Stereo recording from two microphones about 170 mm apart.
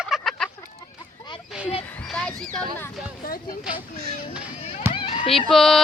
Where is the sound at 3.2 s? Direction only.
60° left (ahead or behind).